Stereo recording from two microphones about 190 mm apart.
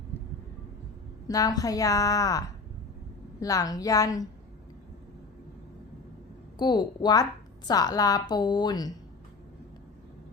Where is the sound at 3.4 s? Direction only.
20° left (ahead or behind).